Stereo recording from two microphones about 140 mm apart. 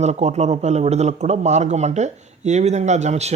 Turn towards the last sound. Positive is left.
turn(degrees=-55)  # may be behind; listen again after turning